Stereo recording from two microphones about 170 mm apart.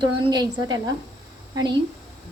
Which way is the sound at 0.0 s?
25° right (ahead or behind).